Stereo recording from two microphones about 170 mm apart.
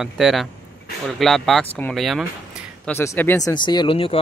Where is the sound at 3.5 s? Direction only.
25° left (ahead or behind).